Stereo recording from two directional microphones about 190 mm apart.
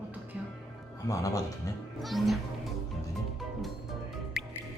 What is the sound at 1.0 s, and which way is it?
Speech, 15° left (ahead or behind).